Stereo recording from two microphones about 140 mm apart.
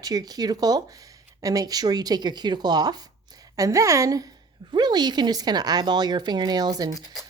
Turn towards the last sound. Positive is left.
turn(degrees=-25)  # may be behind; listen again after turning